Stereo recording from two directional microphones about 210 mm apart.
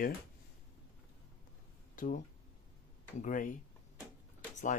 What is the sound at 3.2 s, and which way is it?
Speech, 40° left (ahead or behind).